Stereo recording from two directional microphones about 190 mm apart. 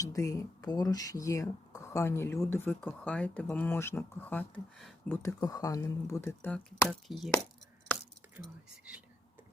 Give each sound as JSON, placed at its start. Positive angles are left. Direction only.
{"t": 0.0, "sound": "speech", "side_deg": 15}
{"t": 5.1, "sound": "speech", "side_deg": 15}